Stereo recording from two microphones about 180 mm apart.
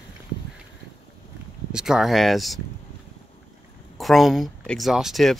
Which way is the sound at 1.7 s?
5° right (ahead or behind).